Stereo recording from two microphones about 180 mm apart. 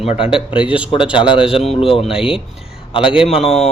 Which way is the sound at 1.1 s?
30° left (ahead or behind).